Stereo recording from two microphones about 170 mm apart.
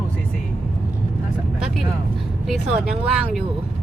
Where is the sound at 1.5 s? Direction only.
5° right (ahead or behind).